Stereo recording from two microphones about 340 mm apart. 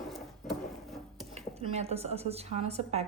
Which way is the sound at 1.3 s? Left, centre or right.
Centre.